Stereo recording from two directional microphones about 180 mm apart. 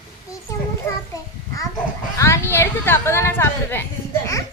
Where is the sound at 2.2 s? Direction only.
15° left (ahead or behind).